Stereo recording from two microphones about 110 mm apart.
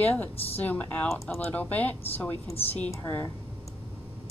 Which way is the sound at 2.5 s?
65° left (ahead or behind).